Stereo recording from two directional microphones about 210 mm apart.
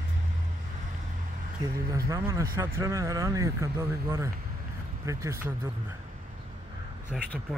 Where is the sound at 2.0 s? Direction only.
15° right (ahead or behind).